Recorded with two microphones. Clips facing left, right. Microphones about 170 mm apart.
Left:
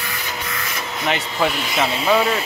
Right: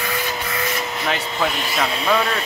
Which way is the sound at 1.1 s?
5° left (ahead or behind).